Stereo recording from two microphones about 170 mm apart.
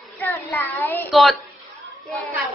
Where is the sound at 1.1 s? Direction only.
Centre (ahead or behind).